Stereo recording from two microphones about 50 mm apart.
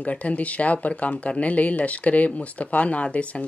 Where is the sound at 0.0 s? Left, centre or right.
Left.